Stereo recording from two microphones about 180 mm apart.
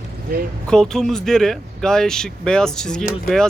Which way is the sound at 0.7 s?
5° left (ahead or behind).